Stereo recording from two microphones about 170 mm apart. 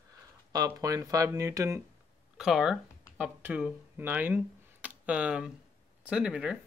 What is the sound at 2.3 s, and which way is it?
Speech, 5° right (ahead or behind).